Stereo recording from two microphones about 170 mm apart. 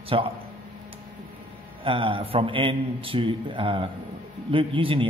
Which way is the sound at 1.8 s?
30° right (ahead or behind).